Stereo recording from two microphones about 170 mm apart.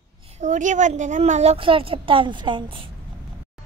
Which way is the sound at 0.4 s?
45° right (ahead or behind).